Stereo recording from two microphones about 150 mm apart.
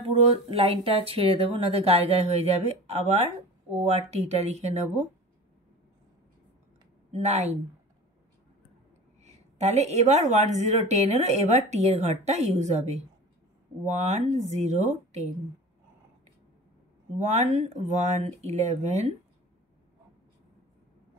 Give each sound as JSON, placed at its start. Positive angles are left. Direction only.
{"t": 0.2, "sound": "speech", "side_deg": -40}
{"t": 7.1, "sound": "speech", "side_deg": -50}
{"t": 9.2, "sound": "a sound", "side_deg": -50}
{"t": 10.4, "sound": "speech", "side_deg": -50}
{"t": 17.2, "sound": "speech", "side_deg": -50}